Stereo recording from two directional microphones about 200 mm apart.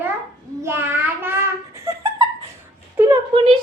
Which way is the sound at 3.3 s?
25° right (ahead or behind).